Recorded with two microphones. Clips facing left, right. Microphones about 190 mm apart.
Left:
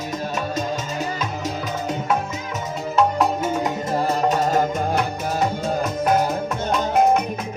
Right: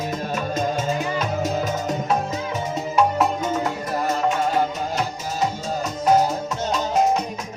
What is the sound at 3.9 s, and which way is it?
Music, 30° left (ahead or behind).